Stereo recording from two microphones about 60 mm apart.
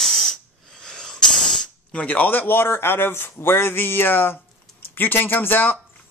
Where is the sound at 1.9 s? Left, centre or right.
Left.